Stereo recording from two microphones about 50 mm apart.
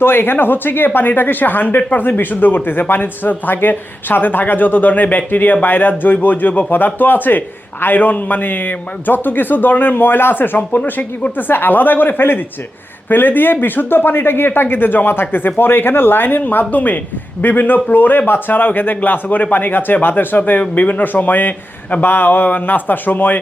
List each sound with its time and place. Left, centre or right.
0.0 s a man's voice: left